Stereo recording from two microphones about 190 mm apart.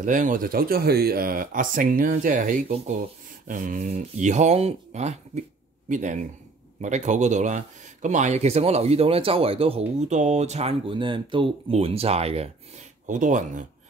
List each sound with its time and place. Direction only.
0.0 s speech: 40° right (ahead or behind)